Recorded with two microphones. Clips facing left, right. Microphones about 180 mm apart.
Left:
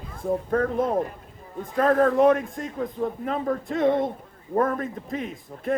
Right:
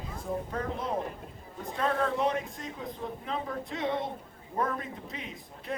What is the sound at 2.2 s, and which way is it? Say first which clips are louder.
Speech: left 11 dB; 50° left (ahead or behind).